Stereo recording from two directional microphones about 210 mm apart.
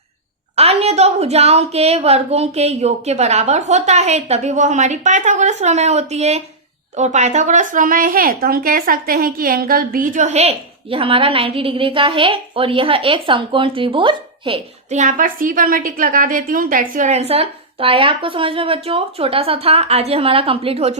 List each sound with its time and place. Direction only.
0.5 s a woman's voice: 30° right (ahead or behind)